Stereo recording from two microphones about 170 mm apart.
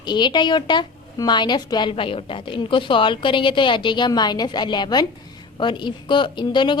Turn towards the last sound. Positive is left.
turn(degrees=30)  # may be behind; listen again after turning